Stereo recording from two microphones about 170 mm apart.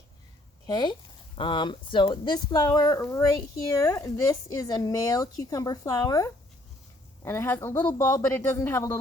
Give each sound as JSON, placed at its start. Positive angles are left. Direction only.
{"t": 0.7, "sound": "a woman's voice", "side_deg": 25}